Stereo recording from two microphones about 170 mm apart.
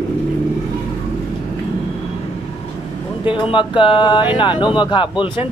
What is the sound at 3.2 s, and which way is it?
Speech, 30° left (ahead or behind).